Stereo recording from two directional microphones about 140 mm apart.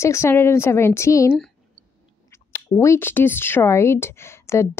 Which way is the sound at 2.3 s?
20° left (ahead or behind).